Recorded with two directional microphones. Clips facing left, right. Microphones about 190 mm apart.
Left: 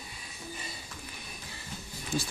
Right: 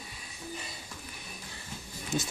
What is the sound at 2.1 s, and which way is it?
Speech, 20° right (ahead or behind).